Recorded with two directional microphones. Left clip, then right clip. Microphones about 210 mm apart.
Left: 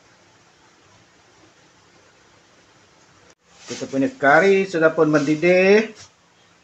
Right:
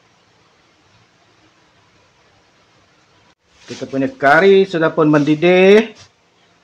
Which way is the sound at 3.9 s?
35° right (ahead or behind).